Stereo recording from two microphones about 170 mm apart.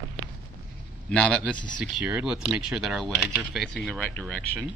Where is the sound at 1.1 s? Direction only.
5° left (ahead or behind).